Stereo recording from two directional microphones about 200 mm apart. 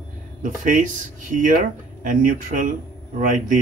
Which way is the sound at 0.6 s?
40° right (ahead or behind).